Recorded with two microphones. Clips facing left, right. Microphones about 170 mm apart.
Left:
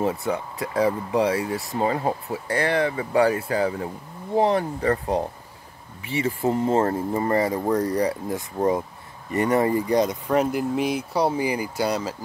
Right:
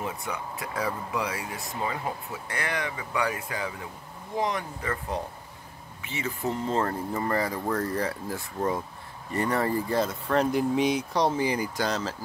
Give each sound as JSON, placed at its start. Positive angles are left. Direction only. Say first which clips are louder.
{"t": 0.0, "sound": "speech", "louder": "left 9 dB", "side_deg": 35}